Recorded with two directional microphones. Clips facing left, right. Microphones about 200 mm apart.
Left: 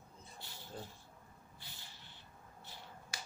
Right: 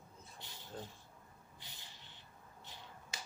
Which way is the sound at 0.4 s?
20° right (ahead or behind).